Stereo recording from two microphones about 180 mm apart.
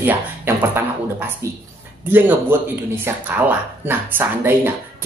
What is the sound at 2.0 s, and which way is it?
Speech, 10° right (ahead or behind).